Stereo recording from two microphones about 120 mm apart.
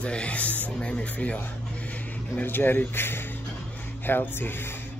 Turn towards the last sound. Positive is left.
turn(degrees=20)  # may be behind; listen again after turning